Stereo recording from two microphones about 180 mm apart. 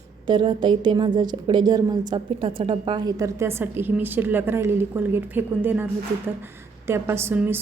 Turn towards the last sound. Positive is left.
turn(degrees=-10)  # may be behind; listen again after turning